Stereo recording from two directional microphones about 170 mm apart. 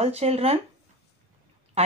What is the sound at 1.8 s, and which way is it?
Speech, 40° right (ahead or behind).